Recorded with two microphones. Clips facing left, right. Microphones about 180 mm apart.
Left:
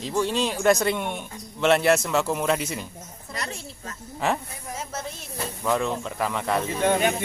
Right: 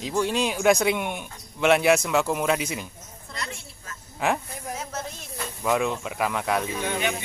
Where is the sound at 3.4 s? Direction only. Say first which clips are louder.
Left 2 dB; 35° left (ahead or behind).